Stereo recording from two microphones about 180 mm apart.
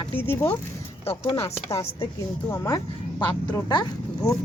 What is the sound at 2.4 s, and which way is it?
A woman's voice, 15° left (ahead or behind).